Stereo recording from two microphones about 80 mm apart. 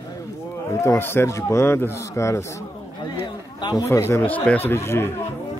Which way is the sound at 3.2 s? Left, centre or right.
Left.